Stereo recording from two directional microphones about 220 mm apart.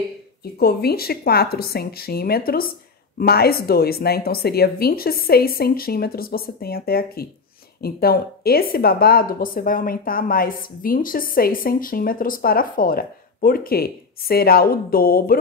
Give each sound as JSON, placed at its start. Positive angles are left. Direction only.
{"t": 0.4, "sound": "a woman's voice", "side_deg": 45}